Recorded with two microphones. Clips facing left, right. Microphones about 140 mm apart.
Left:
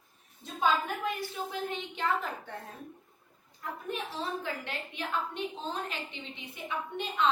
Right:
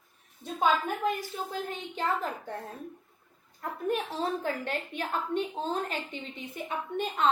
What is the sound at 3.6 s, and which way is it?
A woman's voice, 45° right (ahead or behind).